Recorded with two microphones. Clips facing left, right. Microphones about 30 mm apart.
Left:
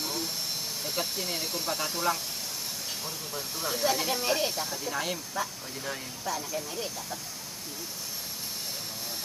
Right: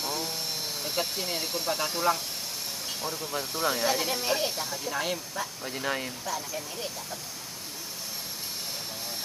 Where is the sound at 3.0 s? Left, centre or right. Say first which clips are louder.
Right 4 dB; right.